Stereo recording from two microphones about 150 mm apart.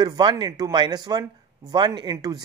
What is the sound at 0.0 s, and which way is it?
Speech, 30° right (ahead or behind).